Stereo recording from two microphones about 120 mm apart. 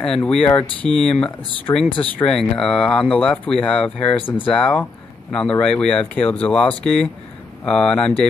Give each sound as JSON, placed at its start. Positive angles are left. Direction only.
{"t": 0.0, "sound": "speech", "side_deg": 5}
{"t": 1.7, "sound": "speech", "side_deg": 30}
{"t": 2.1, "sound": "speech", "side_deg": 5}